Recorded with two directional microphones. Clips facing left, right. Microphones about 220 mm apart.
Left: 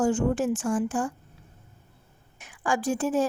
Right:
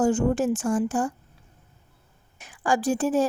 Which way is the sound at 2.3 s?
35° right (ahead or behind).